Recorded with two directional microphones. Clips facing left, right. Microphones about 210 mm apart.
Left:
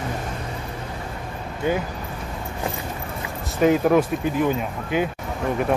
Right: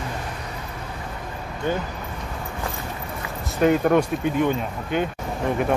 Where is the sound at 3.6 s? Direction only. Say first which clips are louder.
Left 1 dB; centre (ahead or behind).